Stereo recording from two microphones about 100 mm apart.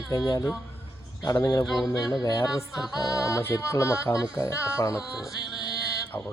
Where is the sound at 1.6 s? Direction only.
Centre (ahead or behind).